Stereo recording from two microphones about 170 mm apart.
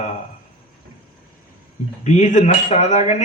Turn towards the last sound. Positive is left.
turn(degrees=40)  # may be behind; listen again after turning